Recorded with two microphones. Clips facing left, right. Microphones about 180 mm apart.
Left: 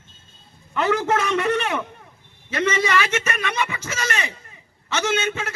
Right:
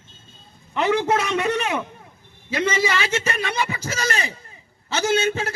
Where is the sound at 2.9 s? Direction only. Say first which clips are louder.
Left 1 dB; 30° right (ahead or behind).